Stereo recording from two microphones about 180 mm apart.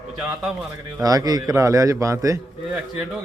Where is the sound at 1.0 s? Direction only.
20° right (ahead or behind).